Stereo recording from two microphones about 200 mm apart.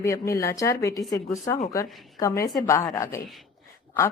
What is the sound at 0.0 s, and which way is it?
Speech, 15° left (ahead or behind).